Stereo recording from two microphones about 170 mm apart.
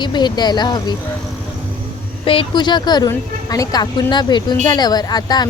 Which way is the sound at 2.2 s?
30° left (ahead or behind).